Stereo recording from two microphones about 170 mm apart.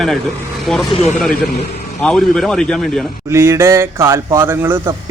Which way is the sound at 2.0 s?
5° left (ahead or behind).